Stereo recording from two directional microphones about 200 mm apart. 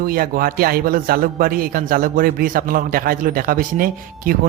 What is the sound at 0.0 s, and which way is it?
A man's voice, 45° right (ahead or behind).